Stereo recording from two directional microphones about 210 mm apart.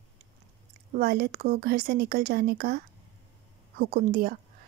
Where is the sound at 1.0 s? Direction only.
45° right (ahead or behind).